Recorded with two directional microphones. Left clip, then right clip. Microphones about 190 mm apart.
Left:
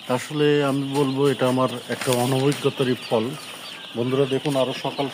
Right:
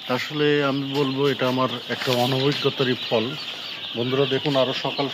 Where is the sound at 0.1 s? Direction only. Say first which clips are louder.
Left 1 dB; 30° left (ahead or behind); by 2.9 s 15° left (ahead or behind).